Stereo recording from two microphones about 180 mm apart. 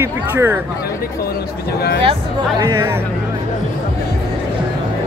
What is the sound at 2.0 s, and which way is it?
Speech, 30° right (ahead or behind).